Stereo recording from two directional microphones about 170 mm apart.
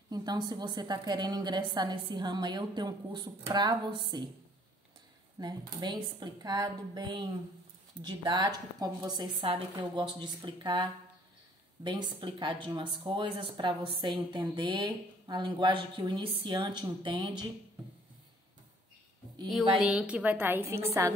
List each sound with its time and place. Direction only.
0.1 s speech: 25° right (ahead or behind)
5.4 s speech: 25° right (ahead or behind)
19.8 s a woman's voice: 5° right (ahead or behind)